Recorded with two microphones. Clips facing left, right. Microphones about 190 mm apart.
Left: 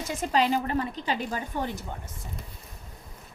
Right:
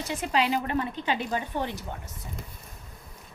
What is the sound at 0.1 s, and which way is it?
A woman's voice, 45° left (ahead or behind).